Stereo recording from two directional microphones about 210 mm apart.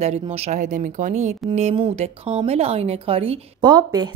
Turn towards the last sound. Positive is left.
turn(degrees=-20)  # may be behind; listen again after turning